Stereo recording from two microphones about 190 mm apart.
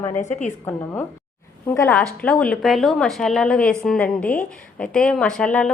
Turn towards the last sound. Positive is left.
turn(degrees=5)  # may be behind; listen again after turning